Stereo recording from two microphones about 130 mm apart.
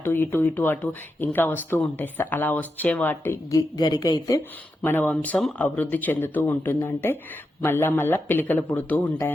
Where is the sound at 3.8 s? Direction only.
30° left (ahead or behind).